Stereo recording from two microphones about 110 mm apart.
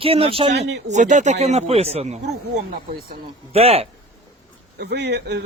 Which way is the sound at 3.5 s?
65° right (ahead or behind).